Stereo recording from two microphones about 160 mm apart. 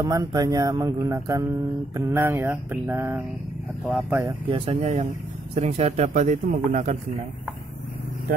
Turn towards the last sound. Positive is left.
turn(degrees=-50)  # may be behind; listen again after turning